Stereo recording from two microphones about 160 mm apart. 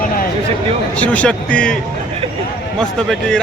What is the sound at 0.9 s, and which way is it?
A man's voice, 10° left (ahead or behind).